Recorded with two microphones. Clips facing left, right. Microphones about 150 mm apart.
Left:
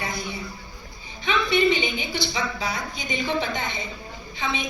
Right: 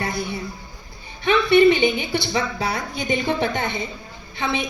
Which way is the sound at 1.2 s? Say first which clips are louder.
Right 7 dB; 55° right (ahead or behind).